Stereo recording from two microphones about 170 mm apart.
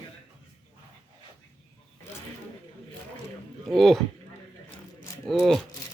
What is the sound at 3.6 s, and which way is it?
Speech, centre (ahead or behind).